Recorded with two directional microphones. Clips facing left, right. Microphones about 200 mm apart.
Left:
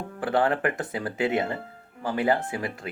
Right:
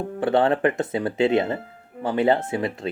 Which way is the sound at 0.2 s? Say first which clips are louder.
Right 4 dB; 25° right (ahead or behind).